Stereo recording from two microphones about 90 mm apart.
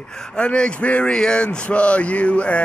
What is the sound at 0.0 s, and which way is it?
Speech, 10° left (ahead or behind).